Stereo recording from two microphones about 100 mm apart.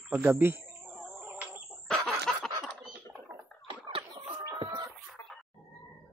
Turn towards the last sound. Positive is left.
turn(degrees=-45)  # may be behind; listen again after turning